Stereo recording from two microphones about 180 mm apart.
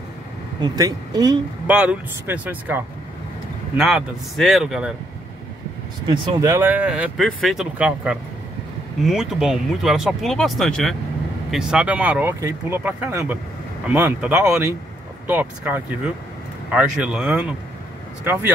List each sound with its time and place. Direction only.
0.6 s speech: 20° right (ahead or behind)
1.7 s speech: 5° right (ahead or behind)
6.0 s speech: 20° right (ahead or behind)